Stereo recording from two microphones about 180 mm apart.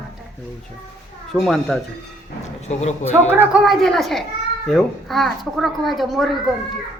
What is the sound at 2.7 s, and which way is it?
Speech, 40° left (ahead or behind).